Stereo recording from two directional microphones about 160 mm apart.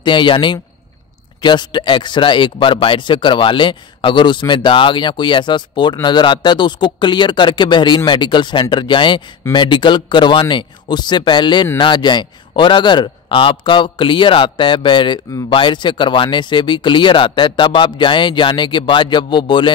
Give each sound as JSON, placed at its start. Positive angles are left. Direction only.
{"t": 0.0, "sound": "a man's voice", "side_deg": 30}